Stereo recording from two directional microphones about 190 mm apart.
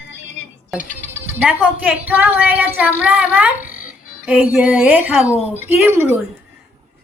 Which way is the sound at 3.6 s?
45° left (ahead or behind).